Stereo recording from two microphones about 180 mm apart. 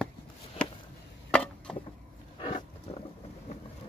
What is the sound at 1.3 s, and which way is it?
Chop, 5° left (ahead or behind).